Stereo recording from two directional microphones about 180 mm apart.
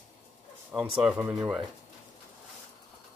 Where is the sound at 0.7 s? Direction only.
5° right (ahead or behind).